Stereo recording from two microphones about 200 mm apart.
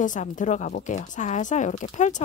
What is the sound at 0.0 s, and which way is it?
A woman's voice, 40° left (ahead or behind).